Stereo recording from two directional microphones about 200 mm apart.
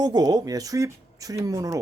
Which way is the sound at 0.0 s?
20° right (ahead or behind).